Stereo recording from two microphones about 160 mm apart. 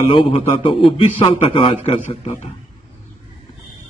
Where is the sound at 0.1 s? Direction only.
30° left (ahead or behind).